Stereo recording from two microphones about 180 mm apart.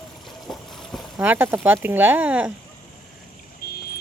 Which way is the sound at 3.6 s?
55° left (ahead or behind).